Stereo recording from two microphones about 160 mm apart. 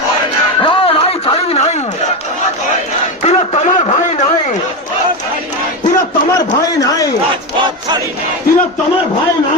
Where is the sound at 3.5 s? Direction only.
45° left (ahead or behind).